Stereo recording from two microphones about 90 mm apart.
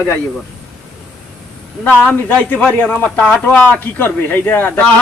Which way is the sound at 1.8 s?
20° left (ahead or behind).